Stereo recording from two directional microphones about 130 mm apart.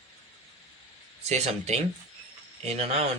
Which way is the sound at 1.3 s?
60° right (ahead or behind).